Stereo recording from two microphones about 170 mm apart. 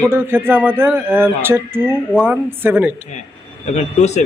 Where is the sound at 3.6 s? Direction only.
40° left (ahead or behind).